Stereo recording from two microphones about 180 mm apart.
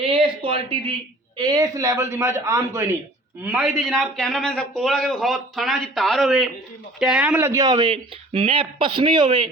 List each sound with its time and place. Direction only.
0.0 s a sound: 30° right (ahead or behind)
1.4 s a man's voice: 20° right (ahead or behind)
3.6 s a man's voice: centre (ahead or behind); by 9.5 s 30° right (ahead or behind)